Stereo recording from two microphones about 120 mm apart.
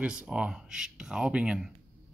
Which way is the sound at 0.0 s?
5° right (ahead or behind).